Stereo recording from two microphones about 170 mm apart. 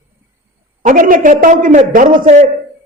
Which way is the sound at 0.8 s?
50° right (ahead or behind).